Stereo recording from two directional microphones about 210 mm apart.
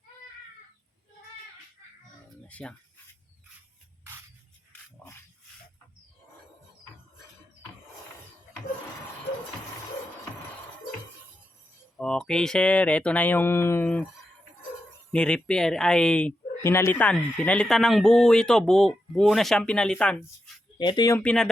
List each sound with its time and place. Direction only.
2.5 s speech: 5° left (ahead or behind)
11.9 s speech: 5° left (ahead or behind)
15.1 s speech: 5° left (ahead or behind)
20.7 s speech: 20° left (ahead or behind)
21.2 s speech: 5° left (ahead or behind)